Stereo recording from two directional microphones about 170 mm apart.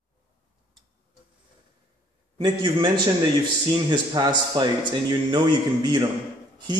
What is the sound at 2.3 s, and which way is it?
A man's voice, 30° right (ahead or behind).